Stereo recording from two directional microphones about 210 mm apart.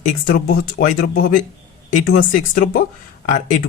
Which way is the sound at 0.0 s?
40° left (ahead or behind).